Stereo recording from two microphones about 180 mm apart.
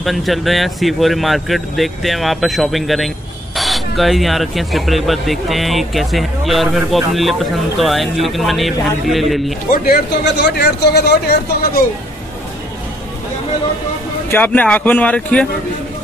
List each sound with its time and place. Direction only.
0.0 s speech: centre (ahead or behind)
9.7 s speech: 50° left (ahead or behind)
10.2 s speech: 70° left (ahead or behind)
14.3 s speech: 10° left (ahead or behind)